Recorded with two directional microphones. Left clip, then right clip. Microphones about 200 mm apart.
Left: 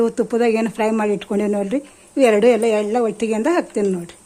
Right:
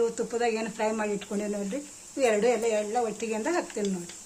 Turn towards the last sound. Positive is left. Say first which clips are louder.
# left 10 dB
turn(degrees=50)  # may be behind; listen again after turning